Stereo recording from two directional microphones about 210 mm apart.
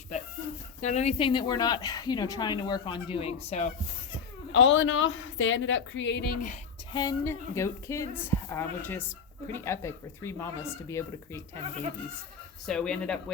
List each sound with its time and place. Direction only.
0.8 s speech: 30° left (ahead or behind)
4.5 s a woman's voice: 60° left (ahead or behind)
6.9 s speech: 20° left (ahead or behind)
12.6 s speech: 5° left (ahead or behind)